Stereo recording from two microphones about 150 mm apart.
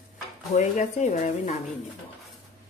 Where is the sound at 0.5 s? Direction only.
50° left (ahead or behind).